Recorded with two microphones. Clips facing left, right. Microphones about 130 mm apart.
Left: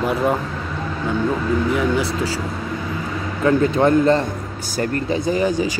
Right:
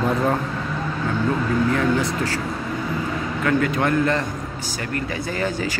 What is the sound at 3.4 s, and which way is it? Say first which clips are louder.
A man's voice: left 5 dB; 25° left (ahead or behind).